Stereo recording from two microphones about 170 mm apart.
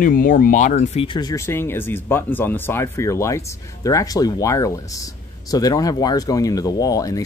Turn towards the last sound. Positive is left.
turn(degrees=20)  # may be behind; listen again after turning